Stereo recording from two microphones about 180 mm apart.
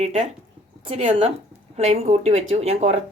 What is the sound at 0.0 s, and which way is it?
Speech, 35° right (ahead or behind).